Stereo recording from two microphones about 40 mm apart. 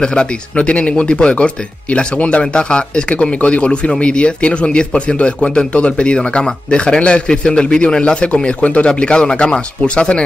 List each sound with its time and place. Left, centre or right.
0.0 s speech: left
0.6 s speech: left